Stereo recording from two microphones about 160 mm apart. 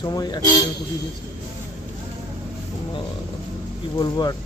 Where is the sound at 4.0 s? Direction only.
25° left (ahead or behind).